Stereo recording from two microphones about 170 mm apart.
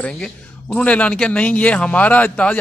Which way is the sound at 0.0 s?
5° left (ahead or behind).